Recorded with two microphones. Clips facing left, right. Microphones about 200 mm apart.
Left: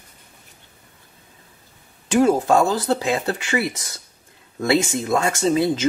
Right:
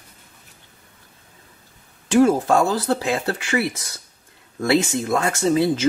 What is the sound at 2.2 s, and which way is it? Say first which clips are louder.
Speech: even; 20° left (ahead or behind).